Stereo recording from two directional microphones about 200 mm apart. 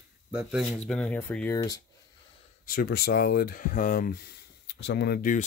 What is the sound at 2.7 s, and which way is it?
Speech, 50° left (ahead or behind).